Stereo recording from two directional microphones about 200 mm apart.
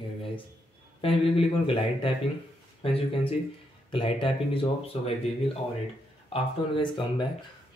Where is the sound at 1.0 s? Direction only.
25° left (ahead or behind).